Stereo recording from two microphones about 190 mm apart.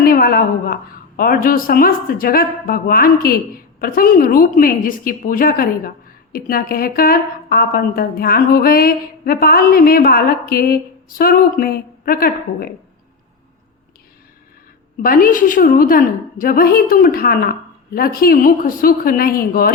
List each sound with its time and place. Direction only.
0.0 s a woman's voice: 50° left (ahead or behind)
15.0 s a woman's voice: 50° left (ahead or behind)